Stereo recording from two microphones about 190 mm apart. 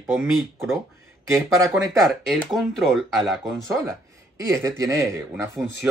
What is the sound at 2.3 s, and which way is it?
Speech, centre (ahead or behind).